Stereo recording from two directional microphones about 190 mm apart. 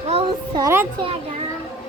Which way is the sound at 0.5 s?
15° right (ahead or behind).